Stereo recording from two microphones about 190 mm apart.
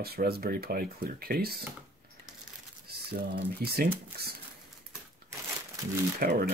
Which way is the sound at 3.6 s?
55° right (ahead or behind).